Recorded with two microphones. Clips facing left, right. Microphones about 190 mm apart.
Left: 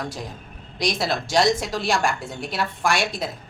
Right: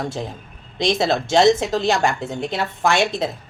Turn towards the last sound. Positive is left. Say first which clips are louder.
# right 5 dB
turn(degrees=-25)  # may be behind; listen again after turning